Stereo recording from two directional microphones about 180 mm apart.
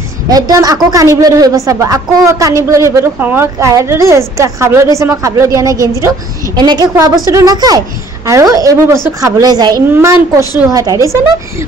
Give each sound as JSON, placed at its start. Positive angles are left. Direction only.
{"t": 0.3, "sound": "a woman's voice", "side_deg": -20}